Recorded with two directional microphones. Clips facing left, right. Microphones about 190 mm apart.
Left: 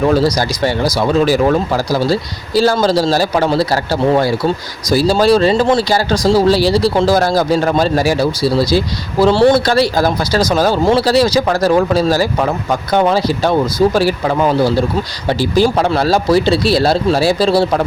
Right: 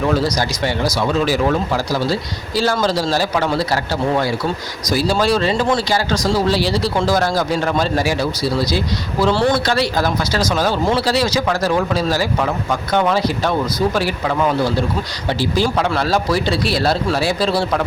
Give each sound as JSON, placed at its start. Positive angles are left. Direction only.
{"t": 0.1, "sound": "speech", "side_deg": 35}
{"t": 4.9, "sound": "speech", "side_deg": 35}